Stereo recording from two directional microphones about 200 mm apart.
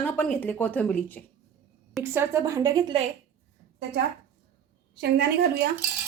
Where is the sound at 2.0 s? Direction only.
15° right (ahead or behind).